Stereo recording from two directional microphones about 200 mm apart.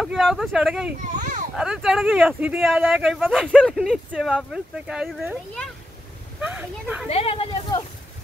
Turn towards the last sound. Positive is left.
turn(degrees=25)  # may be behind; listen again after turning